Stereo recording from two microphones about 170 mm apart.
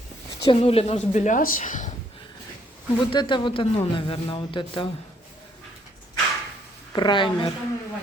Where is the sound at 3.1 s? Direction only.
30° left (ahead or behind).